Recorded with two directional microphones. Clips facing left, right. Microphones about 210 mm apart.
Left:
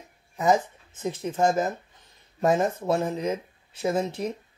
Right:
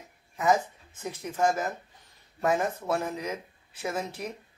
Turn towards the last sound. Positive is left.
turn(degrees=25)  # may be behind; listen again after turning